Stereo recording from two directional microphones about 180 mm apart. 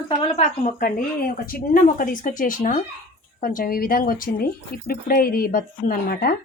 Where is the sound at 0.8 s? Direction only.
50° left (ahead or behind).